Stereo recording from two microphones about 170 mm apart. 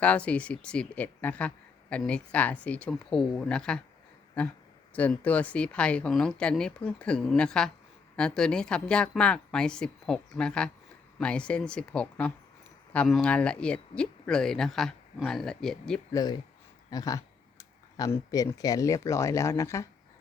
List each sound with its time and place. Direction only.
0.0 s speech: 10° left (ahead or behind)
4.9 s speech: 10° left (ahead or behind)
16.1 s speech: 25° left (ahead or behind)